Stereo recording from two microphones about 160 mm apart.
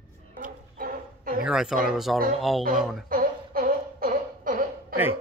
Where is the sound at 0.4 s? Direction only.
60° right (ahead or behind).